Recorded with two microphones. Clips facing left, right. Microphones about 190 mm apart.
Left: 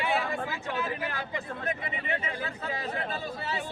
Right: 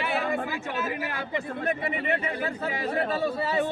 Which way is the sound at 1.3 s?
60° right (ahead or behind).